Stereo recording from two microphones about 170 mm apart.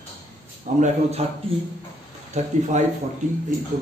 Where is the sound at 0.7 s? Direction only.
45° right (ahead or behind).